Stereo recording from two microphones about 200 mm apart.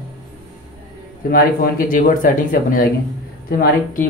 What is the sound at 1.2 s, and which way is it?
Speech, 45° left (ahead or behind).